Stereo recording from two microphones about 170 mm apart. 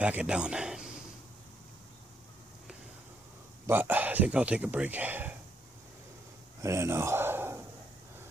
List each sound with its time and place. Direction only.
0.0 s speech: 5° right (ahead or behind)
3.6 s speech: 10° right (ahead or behind)
6.6 s speech: 15° right (ahead or behind)